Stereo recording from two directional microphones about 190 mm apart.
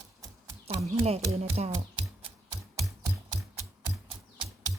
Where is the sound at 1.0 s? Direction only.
35° right (ahead or behind).